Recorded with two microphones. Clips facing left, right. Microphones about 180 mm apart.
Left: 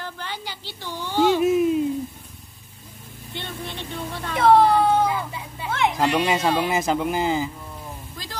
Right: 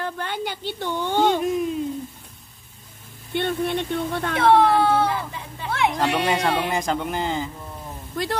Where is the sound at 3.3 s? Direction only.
60° right (ahead or behind).